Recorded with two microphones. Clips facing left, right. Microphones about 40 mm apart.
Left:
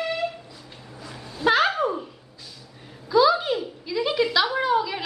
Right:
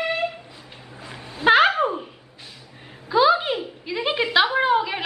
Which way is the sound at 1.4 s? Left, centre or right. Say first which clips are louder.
Right 4 dB; right.